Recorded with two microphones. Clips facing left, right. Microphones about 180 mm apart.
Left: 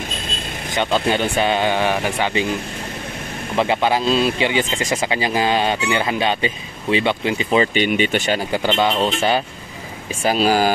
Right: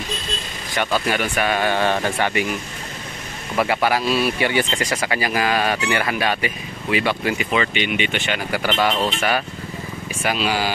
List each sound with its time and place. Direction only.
0.7 s speech: 25° left (ahead or behind)
3.5 s speech: 20° left (ahead or behind); by 8.4 s 40° left (ahead or behind)
8.5 s speech: 25° left (ahead or behind)
10.2 s speech: 40° left (ahead or behind)